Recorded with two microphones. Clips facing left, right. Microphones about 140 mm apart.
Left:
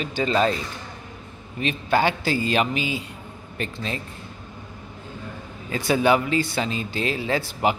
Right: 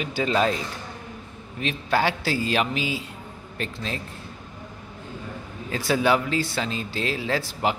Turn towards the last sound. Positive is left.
turn(degrees=0)  # may be behind; listen again after turning